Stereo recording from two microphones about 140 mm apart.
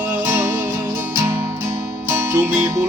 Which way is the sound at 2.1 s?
15° right (ahead or behind).